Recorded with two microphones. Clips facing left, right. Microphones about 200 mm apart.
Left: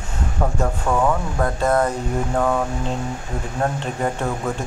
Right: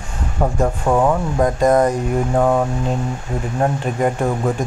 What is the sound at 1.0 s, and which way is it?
Speech, 20° right (ahead or behind).